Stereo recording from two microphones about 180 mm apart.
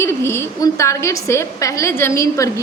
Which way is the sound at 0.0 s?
15° left (ahead or behind).